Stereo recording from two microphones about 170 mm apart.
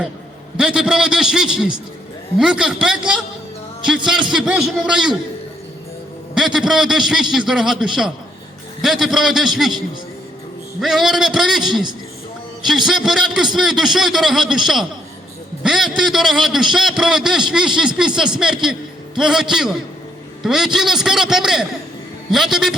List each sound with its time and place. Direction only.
0.5 s a man's voice: 5° right (ahead or behind)
6.3 s a man's voice: 5° right (ahead or behind)
11.6 s a man's voice: 25° right (ahead or behind)
12.6 s a man's voice: centre (ahead or behind)